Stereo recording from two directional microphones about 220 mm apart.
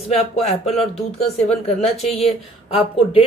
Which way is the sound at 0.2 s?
30° left (ahead or behind).